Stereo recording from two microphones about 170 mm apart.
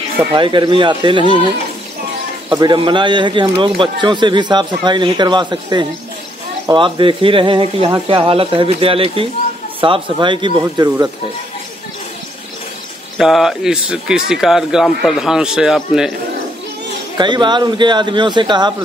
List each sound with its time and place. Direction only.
0.4 s speech: 30° right (ahead or behind)
2.5 s speech: 25° right (ahead or behind)
13.2 s speech: centre (ahead or behind)
17.2 s speech: 25° right (ahead or behind)